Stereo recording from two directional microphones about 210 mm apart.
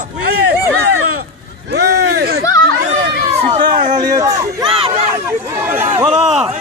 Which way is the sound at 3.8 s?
35° right (ahead or behind).